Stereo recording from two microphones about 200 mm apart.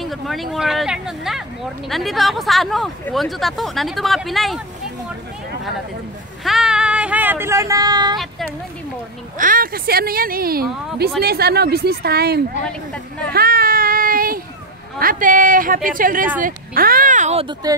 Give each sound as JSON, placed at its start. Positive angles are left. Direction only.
{"t": 0.0, "sound": "speech", "side_deg": 0}
{"t": 6.4, "sound": "speech", "side_deg": 0}
{"t": 9.4, "sound": "speech", "side_deg": -45}
{"t": 13.3, "sound": "a sound", "side_deg": -50}
{"t": 15.0, "sound": "speech", "side_deg": -45}